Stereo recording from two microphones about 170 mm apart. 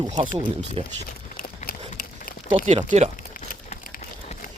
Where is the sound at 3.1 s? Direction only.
50° left (ahead or behind).